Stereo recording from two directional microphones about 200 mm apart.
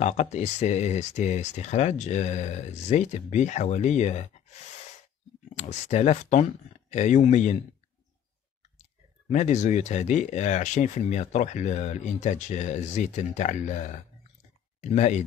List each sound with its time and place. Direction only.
0.0 s speech: 35° left (ahead or behind)
5.6 s speech: 35° left (ahead or behind)
9.3 s speech: 35° left (ahead or behind)